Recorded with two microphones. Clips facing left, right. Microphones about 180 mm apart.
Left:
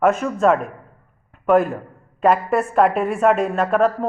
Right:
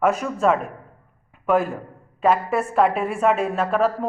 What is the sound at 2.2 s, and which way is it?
A woman's voice, 5° right (ahead or behind).